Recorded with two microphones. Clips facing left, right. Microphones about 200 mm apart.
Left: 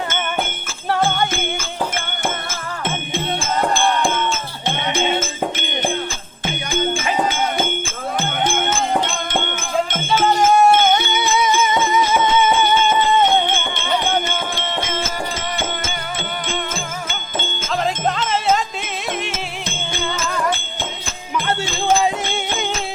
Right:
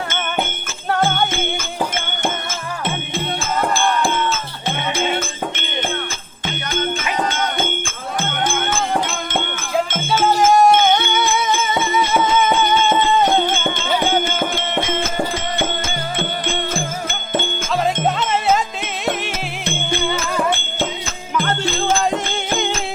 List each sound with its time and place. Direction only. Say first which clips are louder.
1.0 s jingle bell: right 1 dB; centre (ahead or behind)
7.2 s a sound: even; 10° left (ahead or behind)
10.1 s music: right 1 dB; 5° right (ahead or behind)
17.8 s music: right 1 dB; centre (ahead or behind)
22.0 s music: even; 5° left (ahead or behind)